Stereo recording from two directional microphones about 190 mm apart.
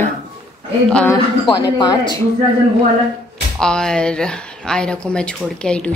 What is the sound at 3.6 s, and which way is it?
Speech, 5° left (ahead or behind).